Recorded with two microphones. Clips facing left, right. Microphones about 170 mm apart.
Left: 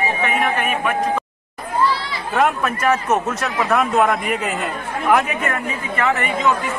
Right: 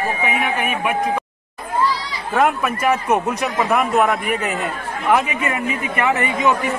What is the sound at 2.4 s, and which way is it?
A man's voice, 10° right (ahead or behind).